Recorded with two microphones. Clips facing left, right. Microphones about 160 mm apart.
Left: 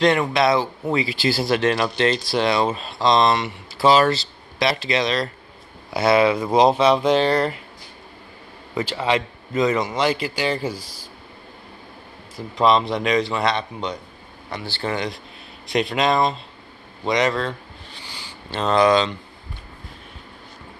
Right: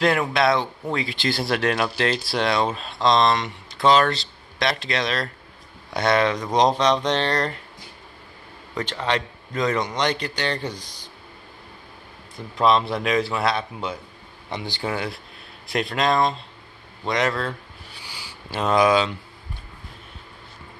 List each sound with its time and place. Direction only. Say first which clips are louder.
0.0 s speech: left 2 dB; centre (ahead or behind)
8.7 s speech: left 3 dB; 5° left (ahead or behind)
12.4 s speech: left 2 dB; centre (ahead or behind)
14.5 s speech: even; 15° right (ahead or behind)
14.9 s speech: left 3 dB; 5° right (ahead or behind)
17.0 s a sound: left 3 dB; centre (ahead or behind)